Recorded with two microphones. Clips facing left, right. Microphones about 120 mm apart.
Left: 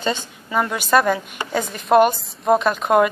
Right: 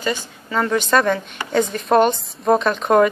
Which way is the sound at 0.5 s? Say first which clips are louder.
Even; 10° left (ahead or behind).